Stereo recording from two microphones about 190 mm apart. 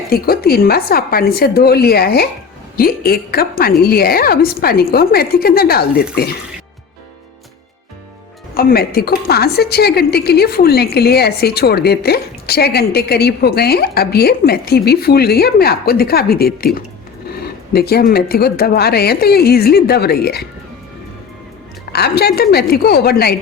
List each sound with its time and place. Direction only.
0.1 s a woman's voice: 55° left (ahead or behind)
8.5 s a woman's voice: 55° left (ahead or behind)
21.9 s a woman's voice: 55° left (ahead or behind)